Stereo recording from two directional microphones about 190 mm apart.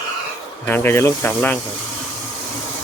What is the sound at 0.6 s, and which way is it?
Speech, 10° left (ahead or behind).